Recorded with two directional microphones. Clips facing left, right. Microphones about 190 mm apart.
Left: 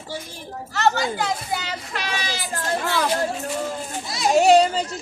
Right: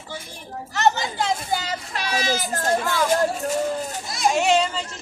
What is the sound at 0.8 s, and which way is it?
Speech, 20° right (ahead or behind).